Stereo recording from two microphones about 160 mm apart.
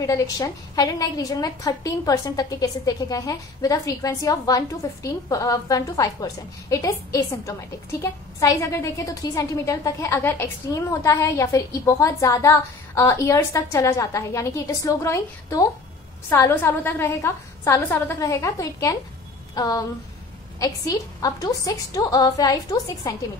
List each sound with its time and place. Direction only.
0.0 s a woman's voice: 20° left (ahead or behind)